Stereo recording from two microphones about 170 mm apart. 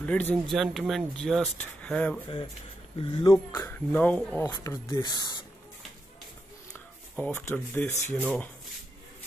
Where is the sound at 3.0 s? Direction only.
25° left (ahead or behind).